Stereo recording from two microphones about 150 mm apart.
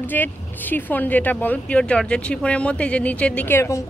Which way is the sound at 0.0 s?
10° left (ahead or behind).